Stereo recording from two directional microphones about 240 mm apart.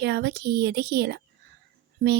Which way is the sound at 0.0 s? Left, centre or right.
Right.